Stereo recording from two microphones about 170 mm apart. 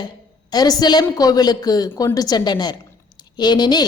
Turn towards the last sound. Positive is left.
turn(degrees=25)  # may be behind; listen again after turning